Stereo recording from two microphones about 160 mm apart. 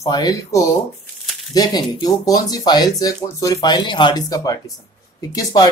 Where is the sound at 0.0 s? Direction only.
25° left (ahead or behind).